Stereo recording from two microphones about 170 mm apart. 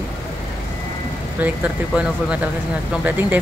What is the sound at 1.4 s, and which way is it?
Speech, 10° right (ahead or behind).